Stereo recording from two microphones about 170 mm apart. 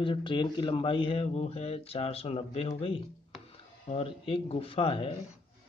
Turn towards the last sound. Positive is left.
turn(degrees=30)  # may be behind; listen again after turning